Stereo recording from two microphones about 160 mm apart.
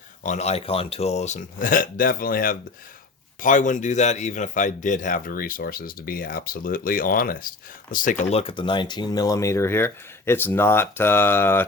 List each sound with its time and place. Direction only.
0.2 s speech: 45° left (ahead or behind); by 2.6 s 65° left (ahead or behind)
3.4 s speech: 50° left (ahead or behind)
8.2 s speech: 40° left (ahead or behind); by 11.6 s 15° left (ahead or behind)